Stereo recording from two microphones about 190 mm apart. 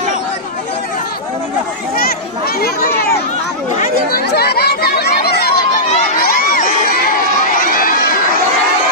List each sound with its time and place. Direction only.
2.0 s chatter: 55° left (ahead or behind)
6.1 s crowd: 50° left (ahead or behind)